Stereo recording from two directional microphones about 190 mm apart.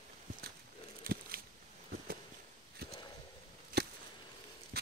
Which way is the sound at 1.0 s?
50° right (ahead or behind).